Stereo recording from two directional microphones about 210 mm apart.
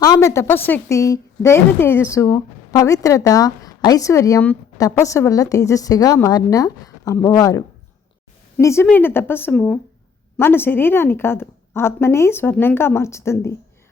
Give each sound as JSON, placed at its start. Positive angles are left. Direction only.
{"t": 0.0, "sound": "a woman's voice", "side_deg": 15}